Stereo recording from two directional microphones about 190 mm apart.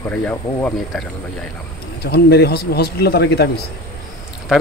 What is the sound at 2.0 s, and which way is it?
Speech, 60° left (ahead or behind).